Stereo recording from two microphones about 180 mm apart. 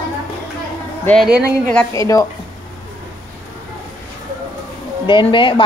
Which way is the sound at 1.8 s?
20° left (ahead or behind).